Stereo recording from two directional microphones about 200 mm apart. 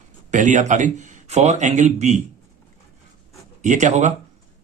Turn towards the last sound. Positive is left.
turn(degrees=-40)  # may be behind; listen again after turning